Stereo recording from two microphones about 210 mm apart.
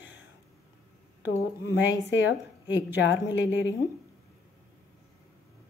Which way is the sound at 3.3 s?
60° left (ahead or behind).